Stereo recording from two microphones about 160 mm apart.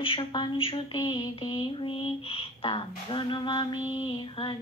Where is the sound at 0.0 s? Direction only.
30° left (ahead or behind).